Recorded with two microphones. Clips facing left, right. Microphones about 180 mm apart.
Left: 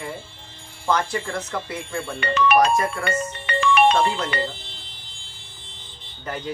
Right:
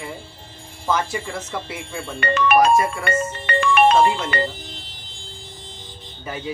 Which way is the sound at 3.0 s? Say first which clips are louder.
Right 3 dB; 50° right (ahead or behind).